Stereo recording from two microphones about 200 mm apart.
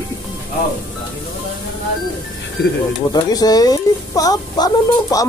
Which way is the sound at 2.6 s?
55° left (ahead or behind).